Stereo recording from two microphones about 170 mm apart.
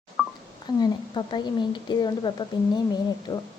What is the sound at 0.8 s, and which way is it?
A woman's voice, 25° left (ahead or behind).